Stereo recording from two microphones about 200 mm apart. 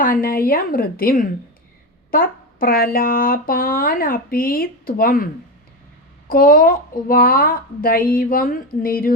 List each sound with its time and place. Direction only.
0.0 s speech: 45° left (ahead or behind)